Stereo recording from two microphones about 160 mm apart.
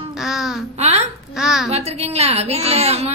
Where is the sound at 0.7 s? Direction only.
40° right (ahead or behind).